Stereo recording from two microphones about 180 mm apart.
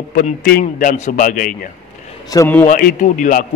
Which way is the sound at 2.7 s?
50° left (ahead or behind).